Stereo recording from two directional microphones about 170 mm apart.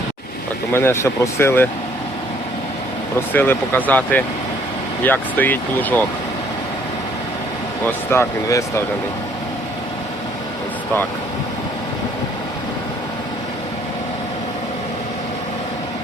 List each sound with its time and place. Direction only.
0.7 s speech: 15° left (ahead or behind)
3.3 s speech: 10° left (ahead or behind)
7.9 s speech: 15° left (ahead or behind)